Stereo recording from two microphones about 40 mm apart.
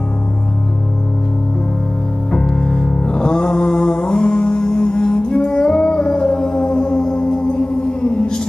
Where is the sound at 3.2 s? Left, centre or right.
Left.